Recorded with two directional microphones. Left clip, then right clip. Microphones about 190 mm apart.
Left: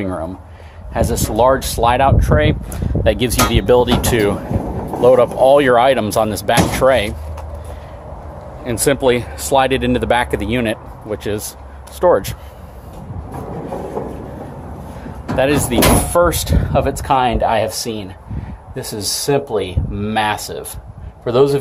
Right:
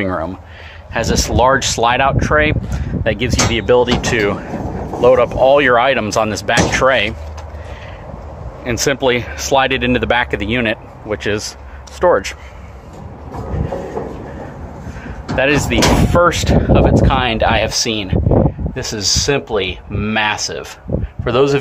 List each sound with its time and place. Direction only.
0.0 s speech: 5° right (ahead or behind)
0.9 s speech: 5° left (ahead or behind)
3.0 s speech: 20° left (ahead or behind); by 7.2 s centre (ahead or behind)
8.6 s speech: centre (ahead or behind)
14.0 s train: 5° left (ahead or behind)
15.3 s speech: 5° left (ahead or behind)